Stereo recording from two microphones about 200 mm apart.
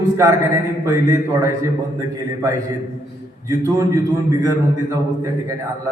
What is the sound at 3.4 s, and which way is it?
A man's voice, 15° right (ahead or behind).